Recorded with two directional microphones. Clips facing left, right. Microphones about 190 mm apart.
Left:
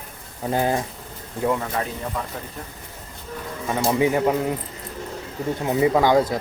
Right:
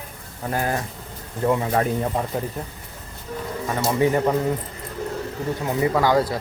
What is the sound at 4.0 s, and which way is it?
Speech, 10° left (ahead or behind).